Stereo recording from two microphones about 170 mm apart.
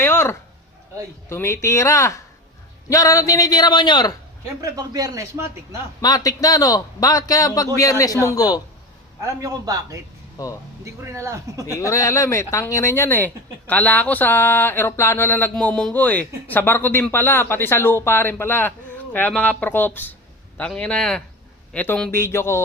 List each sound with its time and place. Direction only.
0.0 s a sound: 15° left (ahead or behind)
1.3 s a man's voice: 15° left (ahead or behind)
4.6 s speech: 20° right (ahead or behind)
6.0 s a man's voice: 20° left (ahead or behind)
9.4 s speech: 20° right (ahead or behind)
10.3 s speech: 20° left (ahead or behind)
10.8 s speech: 15° right (ahead or behind)
11.6 s speech: 20° left (ahead or behind)